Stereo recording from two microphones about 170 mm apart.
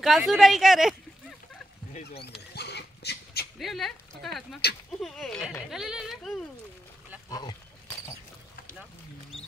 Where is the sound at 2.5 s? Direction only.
75° left (ahead or behind).